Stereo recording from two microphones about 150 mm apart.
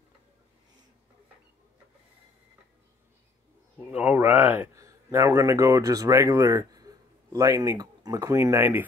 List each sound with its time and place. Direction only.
3.7 s a man's voice: 10° right (ahead or behind)